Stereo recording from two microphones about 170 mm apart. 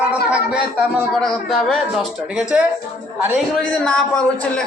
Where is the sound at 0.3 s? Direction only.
5° right (ahead or behind).